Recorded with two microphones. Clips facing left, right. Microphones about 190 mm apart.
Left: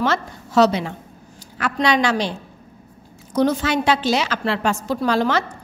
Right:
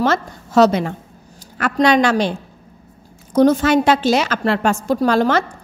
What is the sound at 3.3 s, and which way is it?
A woman's voice, 45° right (ahead or behind).